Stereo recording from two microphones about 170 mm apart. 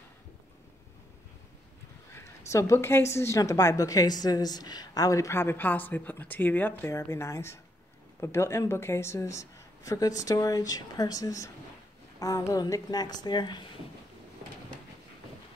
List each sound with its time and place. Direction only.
2.0 s a woman's voice: 15° left (ahead or behind)